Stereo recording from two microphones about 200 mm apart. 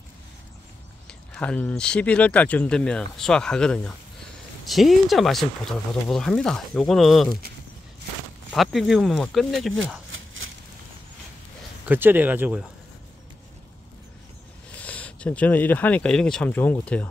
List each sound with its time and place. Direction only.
1.3 s speech: 5° left (ahead or behind)
8.5 s speech: centre (ahead or behind)
10.1 s a sound: 75° right (ahead or behind)
11.8 s speech: 10° right (ahead or behind)
14.7 s speech: 5° left (ahead or behind)